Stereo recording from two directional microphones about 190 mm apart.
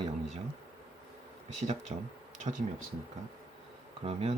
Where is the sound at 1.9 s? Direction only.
35° right (ahead or behind).